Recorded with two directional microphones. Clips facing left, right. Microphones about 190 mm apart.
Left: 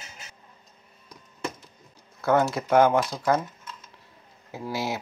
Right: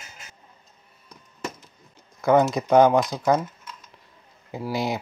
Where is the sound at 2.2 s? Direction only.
20° right (ahead or behind).